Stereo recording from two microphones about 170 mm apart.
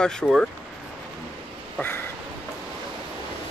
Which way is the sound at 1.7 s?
10° left (ahead or behind).